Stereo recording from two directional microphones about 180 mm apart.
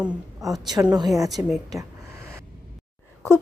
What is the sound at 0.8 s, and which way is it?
Speech, 20° right (ahead or behind).